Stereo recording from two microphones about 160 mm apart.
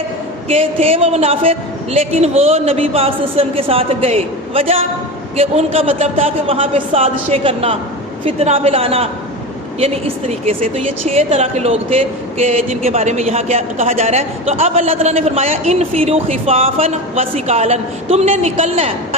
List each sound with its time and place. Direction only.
0.4 s a woman's voice: 40° right (ahead or behind)